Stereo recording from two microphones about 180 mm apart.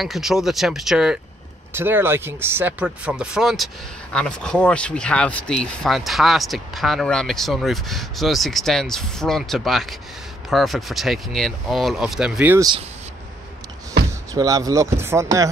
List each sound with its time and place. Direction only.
0.0 s speech: centre (ahead or behind)
14.3 s speech: 20° right (ahead or behind)